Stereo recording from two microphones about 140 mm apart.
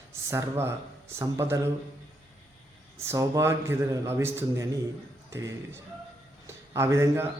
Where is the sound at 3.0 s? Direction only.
20° right (ahead or behind).